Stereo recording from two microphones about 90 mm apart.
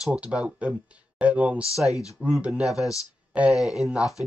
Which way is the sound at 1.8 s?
40° left (ahead or behind).